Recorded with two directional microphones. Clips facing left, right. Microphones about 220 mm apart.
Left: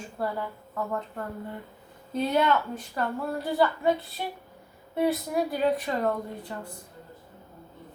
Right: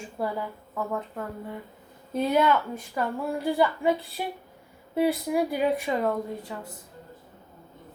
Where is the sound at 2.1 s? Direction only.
10° right (ahead or behind).